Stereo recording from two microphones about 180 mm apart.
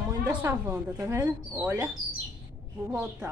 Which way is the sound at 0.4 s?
15° right (ahead or behind).